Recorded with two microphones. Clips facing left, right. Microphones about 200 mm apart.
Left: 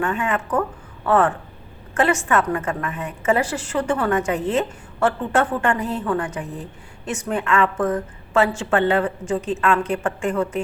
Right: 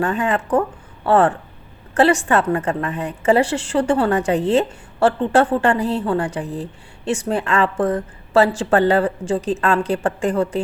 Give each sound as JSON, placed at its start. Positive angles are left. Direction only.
{"t": 0.0, "sound": "a woman's voice", "side_deg": -35}